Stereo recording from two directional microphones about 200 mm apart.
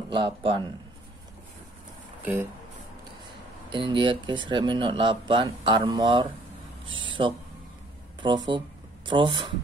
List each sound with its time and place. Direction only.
0.1 s speech: 25° right (ahead or behind)
3.7 s speech: 25° right (ahead or behind)
8.5 s speech: 25° right (ahead or behind)